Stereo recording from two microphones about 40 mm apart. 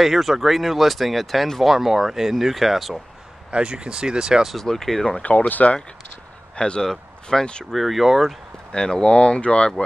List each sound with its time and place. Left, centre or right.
0.0 s speech: centre
3.5 s speech: right
4.6 s speech: centre
5.2 s speech: left
6.5 s speech: left
7.3 s speech: centre
8.7 s speech: left